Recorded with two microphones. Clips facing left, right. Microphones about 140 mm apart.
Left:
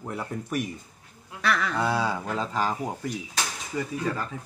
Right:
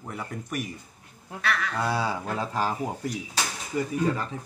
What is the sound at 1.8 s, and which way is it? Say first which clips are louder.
Speech: left 1 dB; centre (ahead or behind).